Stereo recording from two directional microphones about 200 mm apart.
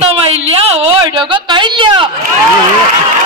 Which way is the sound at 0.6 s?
30° right (ahead or behind).